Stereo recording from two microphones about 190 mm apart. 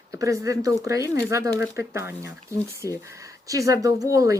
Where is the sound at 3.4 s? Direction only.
15° right (ahead or behind).